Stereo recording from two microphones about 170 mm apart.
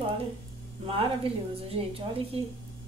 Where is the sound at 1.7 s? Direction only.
35° right (ahead or behind).